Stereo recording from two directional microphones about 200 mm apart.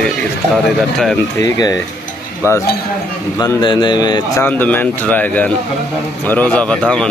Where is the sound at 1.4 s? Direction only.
20° left (ahead or behind).